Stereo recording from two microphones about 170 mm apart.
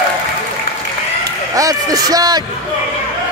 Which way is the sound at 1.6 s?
20° right (ahead or behind).